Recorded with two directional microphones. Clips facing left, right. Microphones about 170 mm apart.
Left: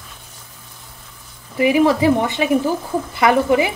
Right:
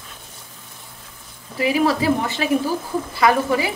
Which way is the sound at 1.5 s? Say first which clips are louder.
Left 4 dB; 20° left (ahead or behind).